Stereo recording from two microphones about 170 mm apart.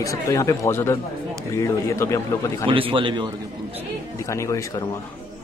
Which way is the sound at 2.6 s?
30° right (ahead or behind).